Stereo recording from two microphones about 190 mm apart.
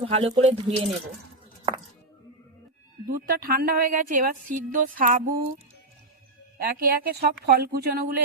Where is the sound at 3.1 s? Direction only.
50° right (ahead or behind).